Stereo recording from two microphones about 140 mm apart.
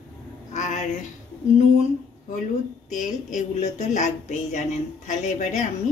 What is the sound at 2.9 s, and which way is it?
Speech, 60° left (ahead or behind).